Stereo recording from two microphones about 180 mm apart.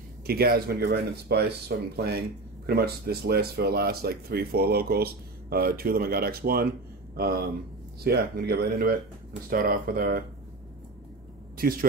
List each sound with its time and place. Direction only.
0.3 s speech: 60° right (ahead or behind)
11.5 s a man's voice: 55° right (ahead or behind)